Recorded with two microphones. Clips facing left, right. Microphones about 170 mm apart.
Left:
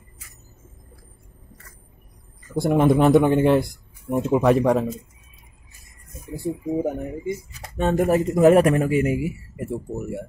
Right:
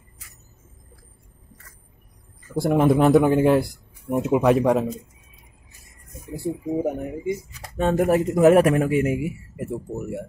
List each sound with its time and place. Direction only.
2.5 s speech: centre (ahead or behind)
6.4 s speech: centre (ahead or behind)